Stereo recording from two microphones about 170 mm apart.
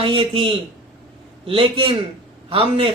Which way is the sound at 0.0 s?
30° right (ahead or behind).